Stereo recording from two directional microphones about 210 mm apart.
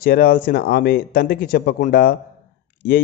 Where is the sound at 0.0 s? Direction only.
45° left (ahead or behind).